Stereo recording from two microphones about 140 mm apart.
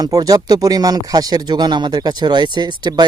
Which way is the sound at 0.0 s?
25° right (ahead or behind).